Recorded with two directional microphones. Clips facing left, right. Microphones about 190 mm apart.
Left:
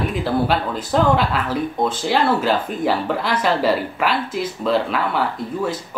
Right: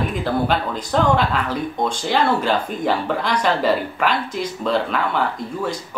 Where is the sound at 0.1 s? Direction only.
5° left (ahead or behind).